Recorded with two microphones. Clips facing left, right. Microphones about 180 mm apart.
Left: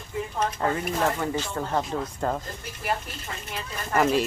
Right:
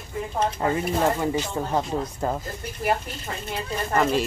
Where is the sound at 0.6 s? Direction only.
15° right (ahead or behind).